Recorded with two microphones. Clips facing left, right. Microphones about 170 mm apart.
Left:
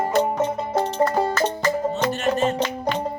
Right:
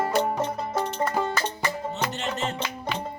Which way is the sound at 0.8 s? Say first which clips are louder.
Left 6 dB; 35° left (ahead or behind).